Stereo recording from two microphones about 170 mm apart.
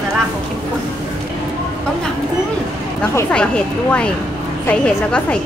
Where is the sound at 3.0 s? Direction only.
5° left (ahead or behind).